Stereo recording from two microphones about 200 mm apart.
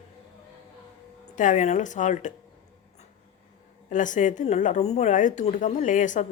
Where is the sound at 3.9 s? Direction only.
40° left (ahead or behind).